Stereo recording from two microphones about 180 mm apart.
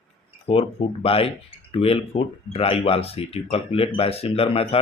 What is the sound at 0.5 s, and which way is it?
Speech, 35° left (ahead or behind).